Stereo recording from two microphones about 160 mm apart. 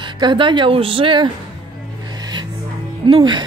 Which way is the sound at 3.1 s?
30° right (ahead or behind).